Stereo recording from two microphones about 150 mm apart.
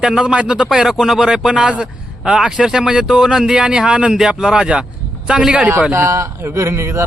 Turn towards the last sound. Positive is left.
turn(degrees=-15)  # may be behind; listen again after turning